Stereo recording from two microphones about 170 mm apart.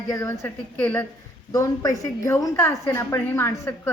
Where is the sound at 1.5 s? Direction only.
20° left (ahead or behind).